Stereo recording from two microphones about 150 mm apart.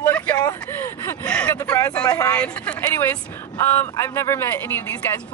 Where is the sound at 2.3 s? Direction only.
10° left (ahead or behind).